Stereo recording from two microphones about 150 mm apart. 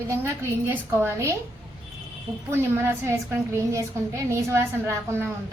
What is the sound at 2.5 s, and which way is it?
A woman's voice, 15° right (ahead or behind).